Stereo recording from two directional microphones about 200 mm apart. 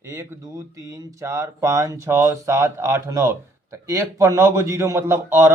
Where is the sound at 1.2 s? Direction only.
15° right (ahead or behind).